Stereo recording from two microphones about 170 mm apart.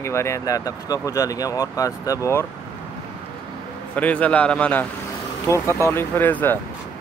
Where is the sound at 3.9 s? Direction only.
10° left (ahead or behind).